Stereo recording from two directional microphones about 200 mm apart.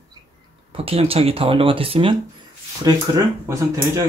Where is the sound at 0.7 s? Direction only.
30° right (ahead or behind).